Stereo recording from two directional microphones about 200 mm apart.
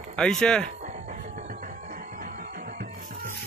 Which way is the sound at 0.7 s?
35° right (ahead or behind).